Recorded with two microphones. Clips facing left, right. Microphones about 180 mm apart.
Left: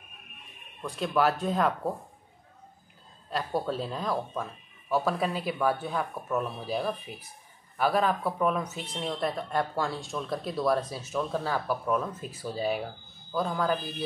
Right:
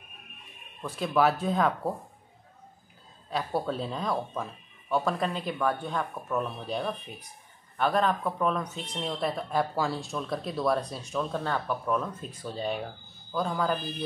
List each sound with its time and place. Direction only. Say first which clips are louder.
0.8 s speech: right 1 dB; centre (ahead or behind)
3.3 s speech: even; centre (ahead or behind)